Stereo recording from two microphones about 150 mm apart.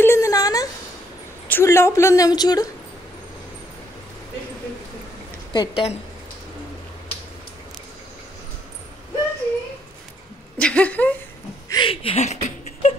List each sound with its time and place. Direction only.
0.0 s a sound: 20° left (ahead or behind)
1.5 s a woman's voice: 15° left (ahead or behind)
5.5 s a woman's voice: 30° left (ahead or behind)
10.6 s speech: 10° left (ahead or behind)
11.7 s speech: 35° left (ahead or behind)